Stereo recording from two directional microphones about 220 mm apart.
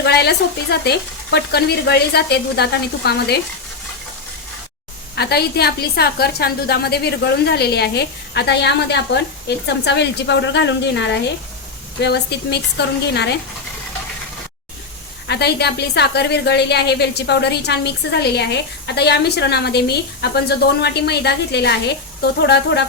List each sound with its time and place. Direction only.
0.0 s a woman's voice: 50° left (ahead or behind)
5.1 s a woman's voice: 45° left (ahead or behind)
15.3 s a woman's voice: 50° left (ahead or behind)